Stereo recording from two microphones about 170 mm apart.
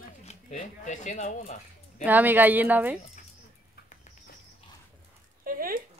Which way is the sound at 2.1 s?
10° right (ahead or behind).